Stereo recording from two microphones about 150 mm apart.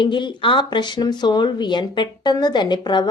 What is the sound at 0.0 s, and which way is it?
Speech, 30° left (ahead or behind).